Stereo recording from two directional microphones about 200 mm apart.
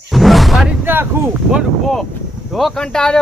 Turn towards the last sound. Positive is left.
turn(degrees=5)  # may be behind; listen again after turning